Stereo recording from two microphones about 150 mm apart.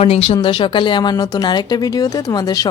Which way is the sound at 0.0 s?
40° left (ahead or behind).